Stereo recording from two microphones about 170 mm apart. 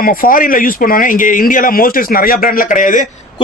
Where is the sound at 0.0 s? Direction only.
60° left (ahead or behind).